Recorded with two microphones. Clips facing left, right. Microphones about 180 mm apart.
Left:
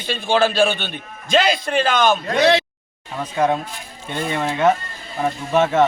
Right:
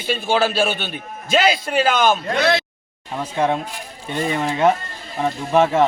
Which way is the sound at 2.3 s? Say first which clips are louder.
Left 3 dB; 15° left (ahead or behind).